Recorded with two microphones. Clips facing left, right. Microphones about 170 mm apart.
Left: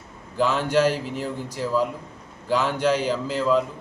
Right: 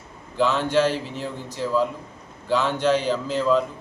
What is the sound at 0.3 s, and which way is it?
A man's voice, 10° left (ahead or behind).